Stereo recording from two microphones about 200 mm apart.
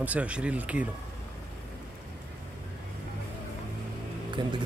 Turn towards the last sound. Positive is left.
turn(degrees=-25)  # may be behind; listen again after turning